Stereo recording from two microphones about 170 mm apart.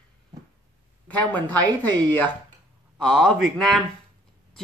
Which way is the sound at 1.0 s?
10° left (ahead or behind).